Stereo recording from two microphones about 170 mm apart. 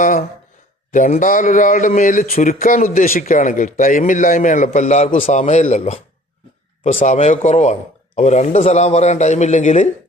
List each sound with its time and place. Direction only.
0.0 s a man's voice: 50° left (ahead or behind)